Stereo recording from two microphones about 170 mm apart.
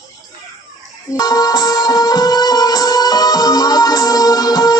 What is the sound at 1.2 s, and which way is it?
Music, 20° left (ahead or behind).